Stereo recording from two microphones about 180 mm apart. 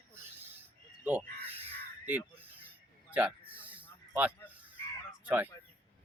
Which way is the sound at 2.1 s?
10° right (ahead or behind).